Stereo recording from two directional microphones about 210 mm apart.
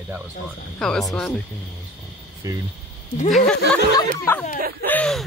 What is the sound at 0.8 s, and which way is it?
Speech, centre (ahead or behind).